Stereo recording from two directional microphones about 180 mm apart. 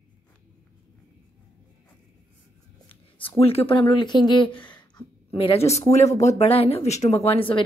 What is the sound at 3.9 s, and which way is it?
Speech, 25° left (ahead or behind).